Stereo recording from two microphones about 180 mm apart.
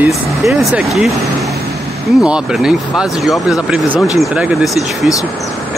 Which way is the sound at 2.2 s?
5° right (ahead or behind).